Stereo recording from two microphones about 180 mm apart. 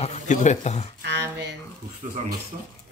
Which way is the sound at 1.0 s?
70° right (ahead or behind).